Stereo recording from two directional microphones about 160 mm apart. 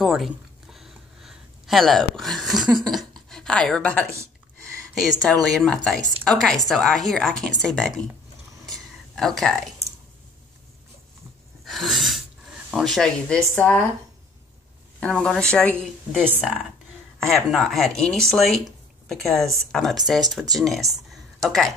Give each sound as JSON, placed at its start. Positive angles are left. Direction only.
{"t": 0.0, "sound": "a sound", "side_deg": 0}
{"t": 5.0, "sound": "a woman's voice", "side_deg": 0}
{"t": 8.6, "sound": "a sound", "side_deg": 0}
{"t": 11.6, "sound": "gasp", "side_deg": 0}
{"t": 12.7, "sound": "a woman's voice", "side_deg": 0}
{"t": 15.0, "sound": "a woman's voice", "side_deg": 5}